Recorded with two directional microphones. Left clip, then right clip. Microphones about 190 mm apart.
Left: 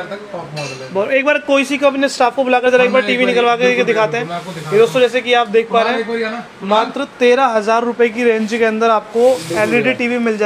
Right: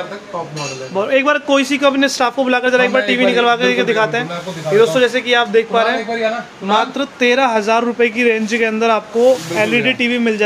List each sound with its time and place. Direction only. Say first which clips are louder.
0.9 s a man's voice: even; 5° right (ahead or behind)